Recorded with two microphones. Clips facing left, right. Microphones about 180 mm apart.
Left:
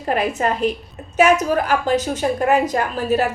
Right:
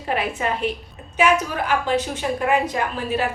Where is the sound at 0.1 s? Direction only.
40° left (ahead or behind).